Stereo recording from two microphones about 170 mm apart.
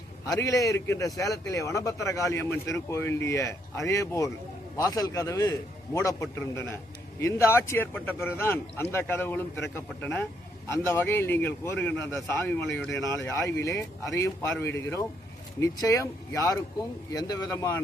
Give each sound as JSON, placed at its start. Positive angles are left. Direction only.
{"t": 0.3, "sound": "a man's voice", "side_deg": 20}
{"t": 13.0, "sound": "a man's voice", "side_deg": 15}